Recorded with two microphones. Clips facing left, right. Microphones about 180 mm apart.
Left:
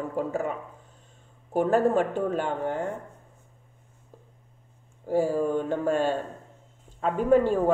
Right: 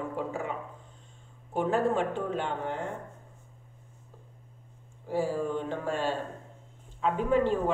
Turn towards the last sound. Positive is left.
turn(degrees=45)  # may be behind; listen again after turning